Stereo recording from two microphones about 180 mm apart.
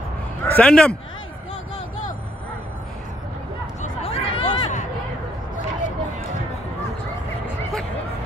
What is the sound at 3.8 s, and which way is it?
Chatter, 35° left (ahead or behind).